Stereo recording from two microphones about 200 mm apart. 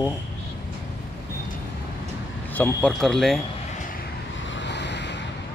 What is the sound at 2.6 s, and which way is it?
Speech, 5° left (ahead or behind).